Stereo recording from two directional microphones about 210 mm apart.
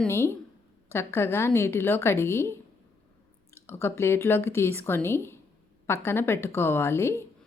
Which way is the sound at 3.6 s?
10° left (ahead or behind).